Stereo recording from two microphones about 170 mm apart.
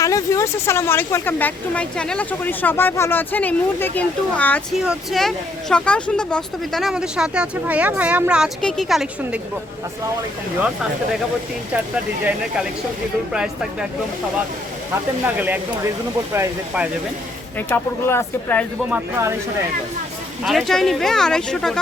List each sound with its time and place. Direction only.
0.0 s speech: 20° left (ahead or behind)
4.7 s speech: 5° right (ahead or behind)
13.3 s speech: 5° right (ahead or behind)
15.4 s speech: 10° right (ahead or behind)
17.7 s speech: 15° left (ahead or behind)
18.9 s speech: 10° right (ahead or behind)
20.4 s speech: centre (ahead or behind)